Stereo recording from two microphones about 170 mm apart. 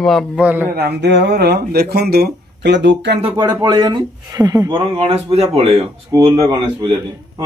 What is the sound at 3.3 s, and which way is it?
Speech, 25° right (ahead or behind).